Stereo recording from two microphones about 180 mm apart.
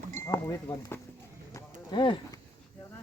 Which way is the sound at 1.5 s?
25° left (ahead or behind).